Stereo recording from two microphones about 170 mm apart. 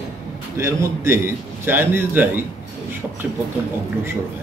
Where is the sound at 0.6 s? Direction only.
15° right (ahead or behind).